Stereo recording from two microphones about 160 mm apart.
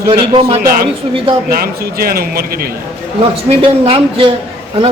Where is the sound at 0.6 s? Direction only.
65° right (ahead or behind).